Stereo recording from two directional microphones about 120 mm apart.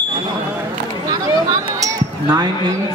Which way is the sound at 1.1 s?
35° right (ahead or behind).